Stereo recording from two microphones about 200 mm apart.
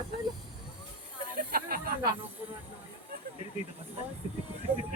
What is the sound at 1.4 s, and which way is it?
Snake, 45° right (ahead or behind).